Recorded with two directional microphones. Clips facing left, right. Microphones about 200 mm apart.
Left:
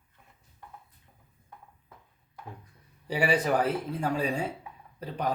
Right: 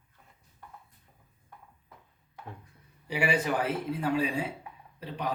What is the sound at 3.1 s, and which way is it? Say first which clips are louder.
A man's voice: left 3 dB; 40° left (ahead or behind).